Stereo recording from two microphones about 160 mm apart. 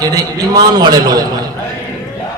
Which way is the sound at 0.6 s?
25° right (ahead or behind).